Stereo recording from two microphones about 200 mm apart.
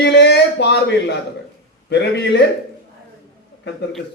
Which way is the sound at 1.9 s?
60° left (ahead or behind).